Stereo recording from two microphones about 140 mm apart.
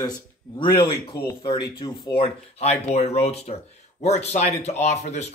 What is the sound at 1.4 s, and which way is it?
Speech, 30° left (ahead or behind).